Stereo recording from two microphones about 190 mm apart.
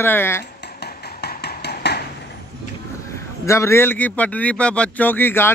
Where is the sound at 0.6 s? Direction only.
60° left (ahead or behind).